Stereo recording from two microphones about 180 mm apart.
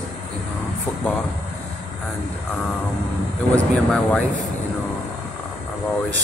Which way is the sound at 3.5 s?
5° left (ahead or behind).